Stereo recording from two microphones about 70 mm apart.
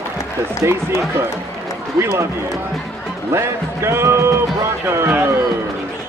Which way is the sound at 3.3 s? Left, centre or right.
Right.